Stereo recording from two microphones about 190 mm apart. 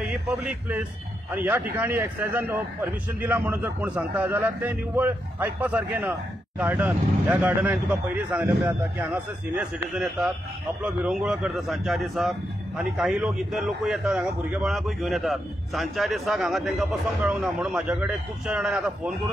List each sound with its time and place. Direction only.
0.0 s a man's voice: 5° right (ahead or behind)